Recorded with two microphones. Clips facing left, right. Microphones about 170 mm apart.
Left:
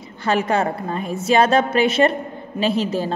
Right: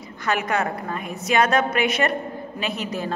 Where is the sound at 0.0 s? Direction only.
30° left (ahead or behind).